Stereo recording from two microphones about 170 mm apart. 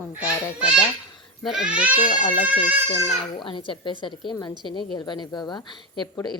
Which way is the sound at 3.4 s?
30° left (ahead or behind).